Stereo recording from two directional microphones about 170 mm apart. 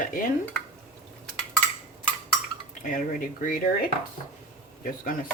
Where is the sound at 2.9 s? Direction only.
50° left (ahead or behind).